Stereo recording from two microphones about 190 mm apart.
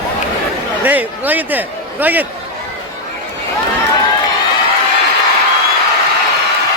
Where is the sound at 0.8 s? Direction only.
10° right (ahead or behind).